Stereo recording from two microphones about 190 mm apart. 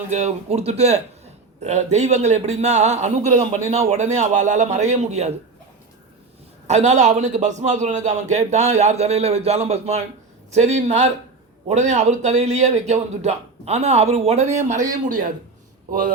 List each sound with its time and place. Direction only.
0.1 s a man's voice: 35° right (ahead or behind)
6.7 s a man's voice: 35° right (ahead or behind)
15.9 s speech: 45° right (ahead or behind)